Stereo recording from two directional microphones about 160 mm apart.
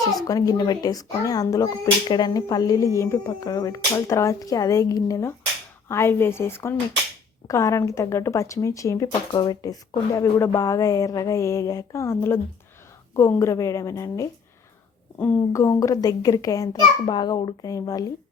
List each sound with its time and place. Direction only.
0.3 s a woman's voice: 20° left (ahead or behind)
15.7 s speech: 20° left (ahead or behind)